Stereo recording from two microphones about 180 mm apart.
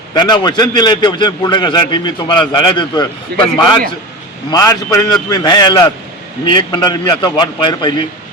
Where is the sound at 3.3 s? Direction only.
60° right (ahead or behind).